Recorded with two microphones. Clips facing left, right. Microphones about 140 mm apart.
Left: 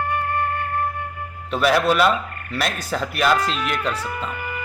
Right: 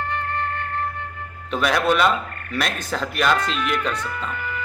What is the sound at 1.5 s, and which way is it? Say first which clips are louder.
A man's voice: left 2 dB; 5° left (ahead or behind).